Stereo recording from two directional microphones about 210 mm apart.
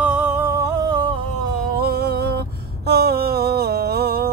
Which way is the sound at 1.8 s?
50° right (ahead or behind).